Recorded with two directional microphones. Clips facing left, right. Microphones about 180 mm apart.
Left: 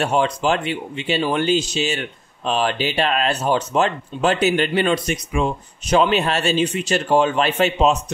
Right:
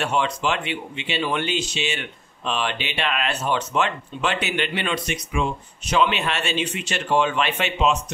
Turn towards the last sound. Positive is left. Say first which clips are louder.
# left 5 dB
turn(degrees=40)  # may be behind; listen again after turning